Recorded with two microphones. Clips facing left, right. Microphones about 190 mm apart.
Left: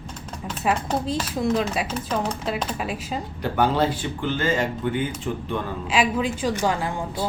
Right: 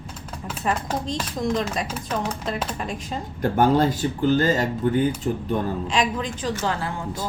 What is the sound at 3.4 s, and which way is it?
Speech, 45° right (ahead or behind).